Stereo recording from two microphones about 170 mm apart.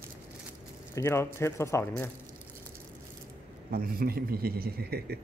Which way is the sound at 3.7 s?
60° right (ahead or behind).